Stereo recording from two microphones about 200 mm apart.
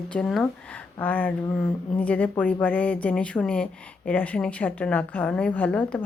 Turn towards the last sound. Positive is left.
turn(degrees=5)  # may be behind; listen again after turning